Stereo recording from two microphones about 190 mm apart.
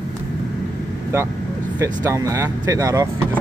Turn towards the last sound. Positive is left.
turn(degrees=-15)  # may be behind; listen again after turning